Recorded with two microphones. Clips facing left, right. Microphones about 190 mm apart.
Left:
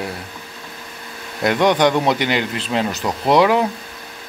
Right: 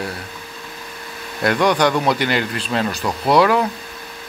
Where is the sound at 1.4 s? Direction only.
20° left (ahead or behind).